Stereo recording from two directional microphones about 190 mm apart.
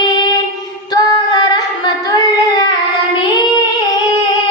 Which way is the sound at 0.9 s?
20° left (ahead or behind).